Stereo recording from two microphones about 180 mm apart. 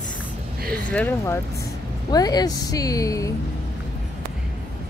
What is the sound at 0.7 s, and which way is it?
Speech, 5° left (ahead or behind).